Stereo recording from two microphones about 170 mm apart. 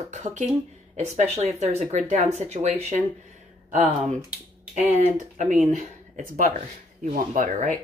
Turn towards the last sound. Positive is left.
turn(degrees=-50)  # may be behind; listen again after turning